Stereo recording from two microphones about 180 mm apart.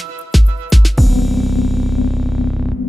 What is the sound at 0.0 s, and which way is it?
Music, centre (ahead or behind).